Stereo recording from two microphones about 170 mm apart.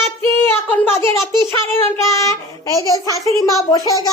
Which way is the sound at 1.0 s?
25° right (ahead or behind).